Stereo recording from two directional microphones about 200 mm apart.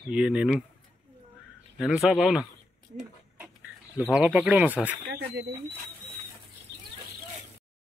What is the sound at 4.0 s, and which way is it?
Speech, 5° right (ahead or behind).